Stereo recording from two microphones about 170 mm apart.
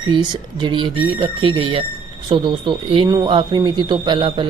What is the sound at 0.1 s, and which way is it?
Speech, 30° right (ahead or behind).